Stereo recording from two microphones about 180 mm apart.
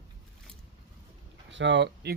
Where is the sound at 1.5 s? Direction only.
80° right.